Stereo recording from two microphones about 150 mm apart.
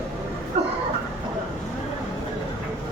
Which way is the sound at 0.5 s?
45° right (ahead or behind).